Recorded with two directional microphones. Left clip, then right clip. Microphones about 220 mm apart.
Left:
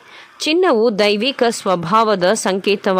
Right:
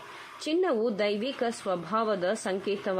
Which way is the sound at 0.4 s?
40° left (ahead or behind).